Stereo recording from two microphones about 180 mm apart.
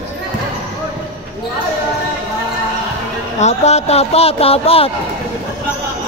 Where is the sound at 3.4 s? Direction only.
35° left (ahead or behind).